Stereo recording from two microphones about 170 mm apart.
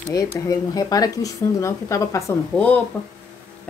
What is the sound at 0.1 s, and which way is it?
Speech, 20° left (ahead or behind).